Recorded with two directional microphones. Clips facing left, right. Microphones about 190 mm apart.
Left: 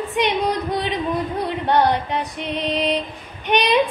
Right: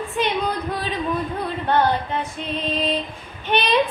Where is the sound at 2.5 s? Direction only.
70° left (ahead or behind).